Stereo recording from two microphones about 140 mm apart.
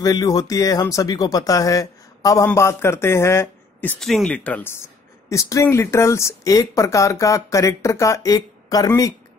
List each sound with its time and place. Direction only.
0.0 s speech: 25° left (ahead or behind)
4.0 s speech: 5° left (ahead or behind); by 9.1 s 25° left (ahead or behind)